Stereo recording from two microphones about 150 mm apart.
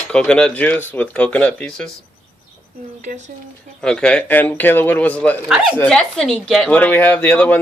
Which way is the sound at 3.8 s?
5° left (ahead or behind).